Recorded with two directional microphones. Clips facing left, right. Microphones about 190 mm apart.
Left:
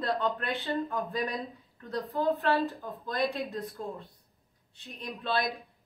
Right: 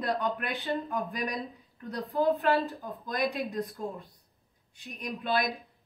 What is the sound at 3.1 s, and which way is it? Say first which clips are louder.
Speech: even; 15° right (ahead or behind).